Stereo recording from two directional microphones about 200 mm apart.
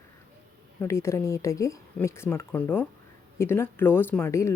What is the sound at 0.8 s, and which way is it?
Speech, 15° left (ahead or behind).